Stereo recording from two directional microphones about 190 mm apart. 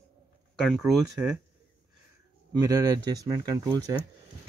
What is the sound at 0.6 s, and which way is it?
Speech, centre (ahead or behind).